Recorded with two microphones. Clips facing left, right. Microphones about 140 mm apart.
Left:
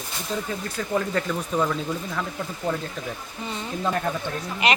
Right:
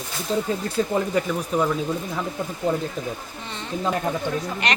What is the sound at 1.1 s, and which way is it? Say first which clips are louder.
Speech: right 3 dB; 10° right (ahead or behind).